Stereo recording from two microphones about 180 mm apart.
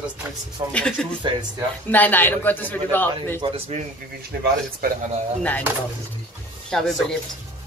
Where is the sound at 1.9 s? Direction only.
10° left (ahead or behind).